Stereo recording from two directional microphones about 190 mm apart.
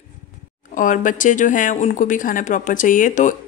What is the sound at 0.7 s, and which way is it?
A woman's voice, 45° left (ahead or behind).